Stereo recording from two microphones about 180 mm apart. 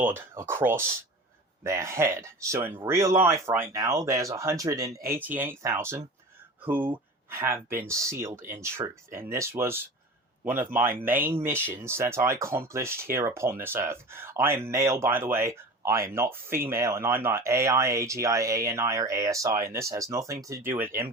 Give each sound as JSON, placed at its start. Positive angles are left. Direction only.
{"t": 0.0, "sound": "speech", "side_deg": -15}